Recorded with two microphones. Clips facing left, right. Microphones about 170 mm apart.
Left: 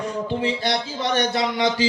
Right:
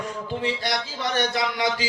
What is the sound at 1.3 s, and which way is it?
Speech, 30° left (ahead or behind).